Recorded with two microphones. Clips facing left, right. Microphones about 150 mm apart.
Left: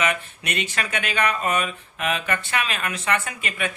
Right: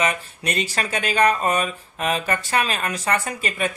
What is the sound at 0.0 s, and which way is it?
Speech, 35° right (ahead or behind).